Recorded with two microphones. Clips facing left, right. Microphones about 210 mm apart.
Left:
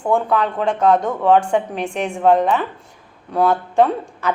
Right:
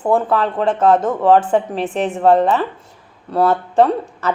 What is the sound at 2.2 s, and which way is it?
Speech, 35° right (ahead or behind).